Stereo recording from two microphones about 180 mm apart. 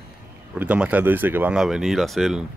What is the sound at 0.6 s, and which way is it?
Speech, 5° right (ahead or behind).